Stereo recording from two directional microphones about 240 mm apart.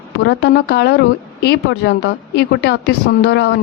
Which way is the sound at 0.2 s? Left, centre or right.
Left.